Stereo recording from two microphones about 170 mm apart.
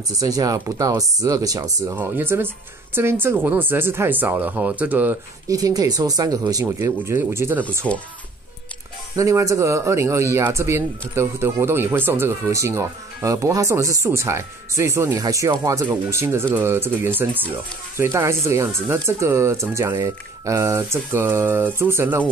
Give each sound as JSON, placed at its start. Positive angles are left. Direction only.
{"t": 0.2, "sound": "a man's voice", "side_deg": -20}
{"t": 5.6, "sound": "speech", "side_deg": -20}
{"t": 7.8, "sound": "speech", "side_deg": 5}
{"t": 9.1, "sound": "a man's voice", "side_deg": -20}